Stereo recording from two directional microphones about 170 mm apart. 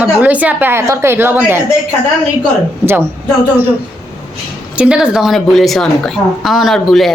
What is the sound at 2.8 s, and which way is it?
Speech, 15° right (ahead or behind).